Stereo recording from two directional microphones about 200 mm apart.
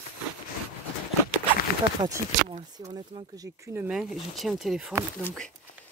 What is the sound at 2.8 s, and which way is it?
Speech, 20° right (ahead or behind).